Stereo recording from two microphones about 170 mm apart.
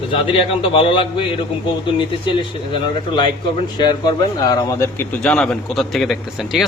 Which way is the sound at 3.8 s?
25° left (ahead or behind).